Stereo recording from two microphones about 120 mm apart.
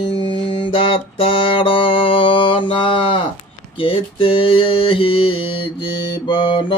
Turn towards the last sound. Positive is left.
turn(degrees=45)  # may be behind; listen again after turning